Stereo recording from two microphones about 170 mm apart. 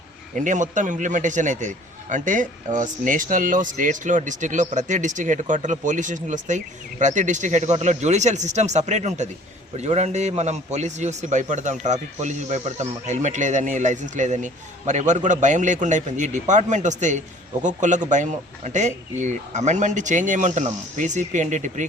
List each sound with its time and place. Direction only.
0.3 s a man's voice: 45° right (ahead or behind)